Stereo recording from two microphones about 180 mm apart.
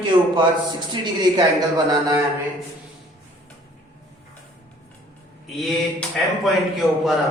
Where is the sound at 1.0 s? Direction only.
25° right (ahead or behind).